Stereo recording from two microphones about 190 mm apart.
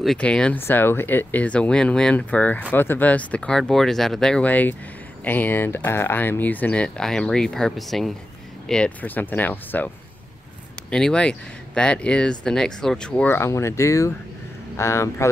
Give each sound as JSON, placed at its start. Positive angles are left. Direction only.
{"t": 0.0, "sound": "speech", "side_deg": 5}
{"t": 10.9, "sound": "speech", "side_deg": 5}